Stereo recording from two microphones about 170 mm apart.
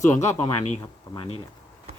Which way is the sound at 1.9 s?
40° right (ahead or behind).